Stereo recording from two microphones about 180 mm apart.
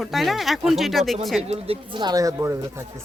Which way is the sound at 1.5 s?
30° right (ahead or behind).